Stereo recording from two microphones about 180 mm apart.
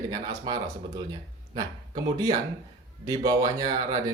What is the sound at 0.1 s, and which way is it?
Speech, 20° right (ahead or behind).